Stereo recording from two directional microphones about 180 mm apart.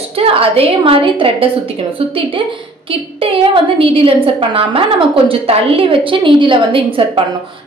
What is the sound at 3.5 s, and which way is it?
A woman's voice, 30° right (ahead or behind).